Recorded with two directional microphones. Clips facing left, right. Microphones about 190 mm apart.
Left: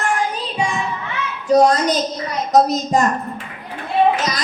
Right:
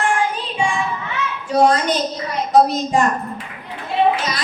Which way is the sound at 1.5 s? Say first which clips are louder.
Left 4 dB; 40° left (ahead or behind).